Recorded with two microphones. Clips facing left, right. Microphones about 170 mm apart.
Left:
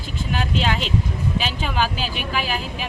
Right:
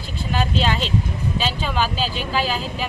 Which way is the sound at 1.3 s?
15° left (ahead or behind).